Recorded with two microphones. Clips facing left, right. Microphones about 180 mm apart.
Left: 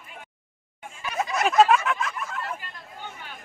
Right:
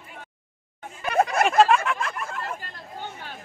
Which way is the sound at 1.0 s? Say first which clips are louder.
Right 6 dB; 60° right (ahead or behind).